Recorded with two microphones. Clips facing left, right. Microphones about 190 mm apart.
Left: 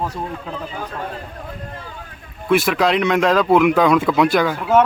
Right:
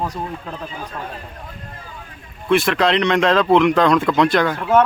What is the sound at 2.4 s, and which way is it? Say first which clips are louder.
Speech: even; 5° left (ahead or behind).